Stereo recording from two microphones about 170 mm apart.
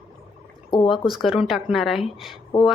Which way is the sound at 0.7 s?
30° left (ahead or behind).